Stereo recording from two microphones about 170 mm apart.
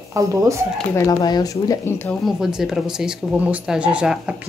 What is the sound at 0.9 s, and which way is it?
Speech, 20° left (ahead or behind).